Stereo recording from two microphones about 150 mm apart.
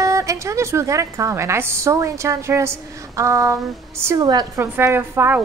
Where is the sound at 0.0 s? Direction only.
20° right (ahead or behind).